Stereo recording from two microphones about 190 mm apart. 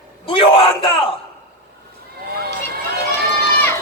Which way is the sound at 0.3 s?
25° left (ahead or behind).